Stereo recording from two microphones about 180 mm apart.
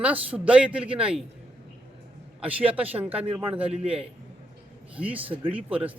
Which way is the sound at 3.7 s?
35° right (ahead or behind).